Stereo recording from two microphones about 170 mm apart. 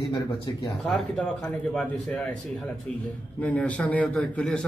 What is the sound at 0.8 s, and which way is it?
A man's voice, centre (ahead or behind).